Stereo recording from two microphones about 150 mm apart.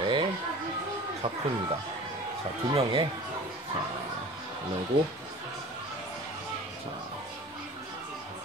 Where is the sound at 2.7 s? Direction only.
40° right (ahead or behind).